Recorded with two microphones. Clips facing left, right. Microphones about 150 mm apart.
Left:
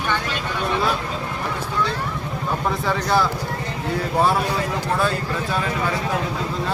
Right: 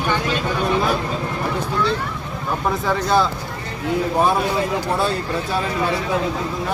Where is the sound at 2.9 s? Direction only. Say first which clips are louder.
Right 2 dB; 15° right (ahead or behind).